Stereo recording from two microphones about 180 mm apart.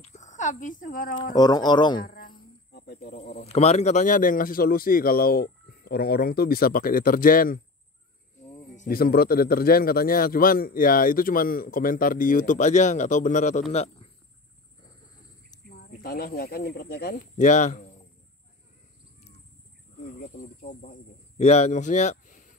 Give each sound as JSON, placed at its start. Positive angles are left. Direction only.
{"t": 0.0, "sound": "a sound", "side_deg": 40}
{"t": 1.3, "sound": "speech", "side_deg": 20}
{"t": 2.0, "sound": "insect", "side_deg": 55}
{"t": 3.2, "sound": "speech", "side_deg": 35}
{"t": 15.7, "sound": "a man's voice", "side_deg": 60}
{"t": 20.1, "sound": "speech", "side_deg": 40}
{"t": 20.3, "sound": "a man's voice", "side_deg": 65}
{"t": 21.4, "sound": "a man's voice", "side_deg": 40}